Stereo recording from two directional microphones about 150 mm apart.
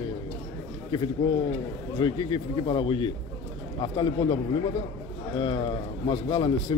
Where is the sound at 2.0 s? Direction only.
30° left (ahead or behind).